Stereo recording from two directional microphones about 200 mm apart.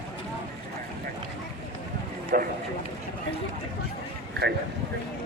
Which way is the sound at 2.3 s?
45° right (ahead or behind).